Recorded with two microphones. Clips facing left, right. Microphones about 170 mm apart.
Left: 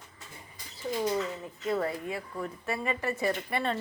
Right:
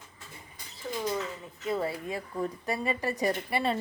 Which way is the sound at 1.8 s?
35° right (ahead or behind).